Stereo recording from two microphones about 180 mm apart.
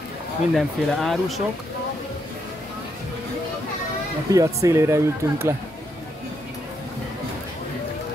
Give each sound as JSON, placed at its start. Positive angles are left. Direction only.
{"t": 0.6, "sound": "speech", "side_deg": 0}
{"t": 4.3, "sound": "speech", "side_deg": -15}